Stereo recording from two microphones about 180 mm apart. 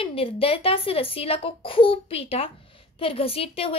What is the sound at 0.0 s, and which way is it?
A woman's voice, 30° left (ahead or behind).